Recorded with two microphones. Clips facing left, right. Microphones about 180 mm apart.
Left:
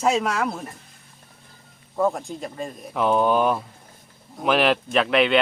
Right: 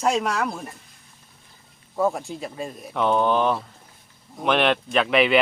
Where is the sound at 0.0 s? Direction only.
5° left (ahead or behind).